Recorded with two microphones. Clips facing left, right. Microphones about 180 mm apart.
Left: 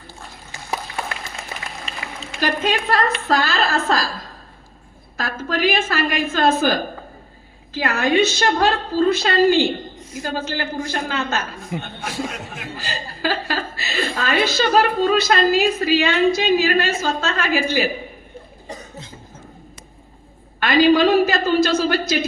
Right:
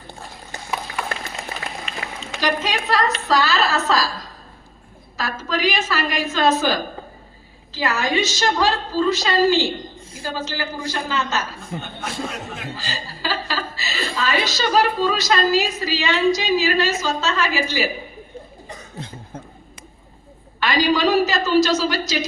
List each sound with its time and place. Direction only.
2.4 s a woman's voice: 55° left (ahead or behind)
5.1 s a woman's voice: 55° left (ahead or behind)
11.7 s speech: 10° left (ahead or behind)
12.9 s a woman's voice: 55° left (ahead or behind)
18.9 s cough: 60° right (ahead or behind)
20.6 s a woman's voice: 55° left (ahead or behind)